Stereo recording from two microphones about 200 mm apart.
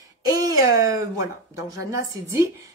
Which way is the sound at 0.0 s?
15° right (ahead or behind).